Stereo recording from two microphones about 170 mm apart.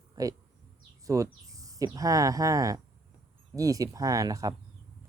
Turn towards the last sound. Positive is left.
turn(degrees=-20)  # may be behind; listen again after turning